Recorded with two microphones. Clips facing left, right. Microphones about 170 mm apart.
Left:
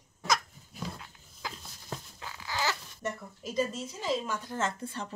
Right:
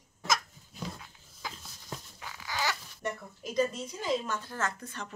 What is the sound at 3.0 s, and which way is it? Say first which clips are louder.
Speech: even; 5° left (ahead or behind).